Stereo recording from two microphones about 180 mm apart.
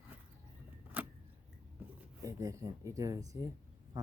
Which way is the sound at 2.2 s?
20° right (ahead or behind).